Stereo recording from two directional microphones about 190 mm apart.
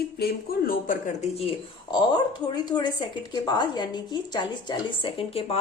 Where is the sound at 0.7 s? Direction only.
40° left (ahead or behind).